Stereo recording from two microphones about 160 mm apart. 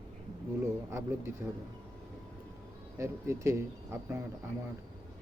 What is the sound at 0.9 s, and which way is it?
Speech, 15° right (ahead or behind).